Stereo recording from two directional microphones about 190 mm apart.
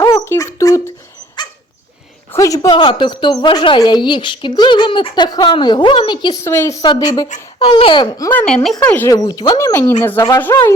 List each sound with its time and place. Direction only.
0.0 s dog: 15° left (ahead or behind)
2.3 s a woman's voice: 15° left (ahead or behind)
8.3 s speech: 5° left (ahead or behind)